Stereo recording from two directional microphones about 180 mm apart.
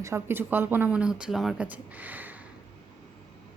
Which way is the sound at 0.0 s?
15° right (ahead or behind).